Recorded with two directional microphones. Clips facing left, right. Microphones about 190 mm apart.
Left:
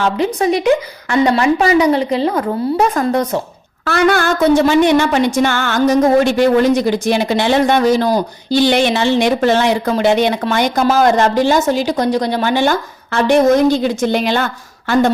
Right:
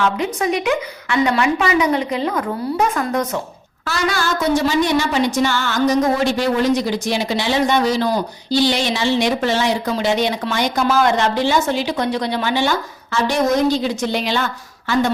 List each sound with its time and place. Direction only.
0.0 s a woman's voice: 35° left (ahead or behind)
3.8 s speech: 60° left (ahead or behind)